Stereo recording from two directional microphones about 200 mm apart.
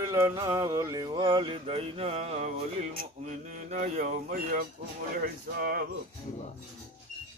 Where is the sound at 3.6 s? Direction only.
35° right (ahead or behind).